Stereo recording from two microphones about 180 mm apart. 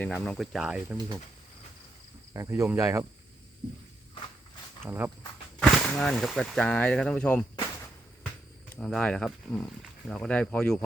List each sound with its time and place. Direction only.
0.0 s speech: 10° left (ahead or behind)
2.3 s speech: 15° right (ahead or behind)
4.8 s speech: 10° right (ahead or behind)
5.5 s speech: centre (ahead or behind)
8.8 s speech: 5° left (ahead or behind)